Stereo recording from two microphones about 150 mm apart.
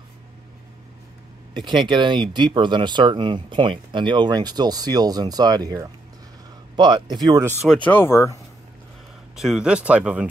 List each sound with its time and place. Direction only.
1.5 s speech: 30° right (ahead or behind)
7.6 s speech: 5° left (ahead or behind)
9.3 s speech: 5° right (ahead or behind)